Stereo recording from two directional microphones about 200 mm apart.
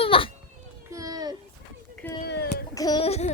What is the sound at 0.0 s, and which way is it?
Children playing, 25° left (ahead or behind).